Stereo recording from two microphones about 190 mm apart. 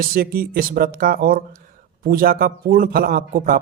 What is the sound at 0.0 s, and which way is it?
A man's voice, 50° right (ahead or behind).